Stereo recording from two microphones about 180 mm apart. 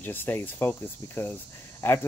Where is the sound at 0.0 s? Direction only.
10° left (ahead or behind).